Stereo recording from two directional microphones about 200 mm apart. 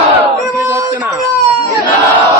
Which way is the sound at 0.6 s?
10° right (ahead or behind).